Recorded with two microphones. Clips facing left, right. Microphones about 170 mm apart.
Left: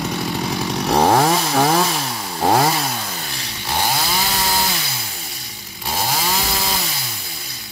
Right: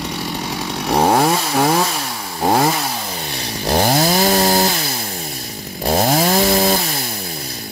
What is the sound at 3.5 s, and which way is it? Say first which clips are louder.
Chainsaw: right 7 dB; 45° right (ahead or behind).